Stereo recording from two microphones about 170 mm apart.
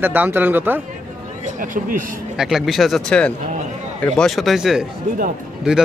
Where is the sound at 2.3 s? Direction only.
Centre (ahead or behind).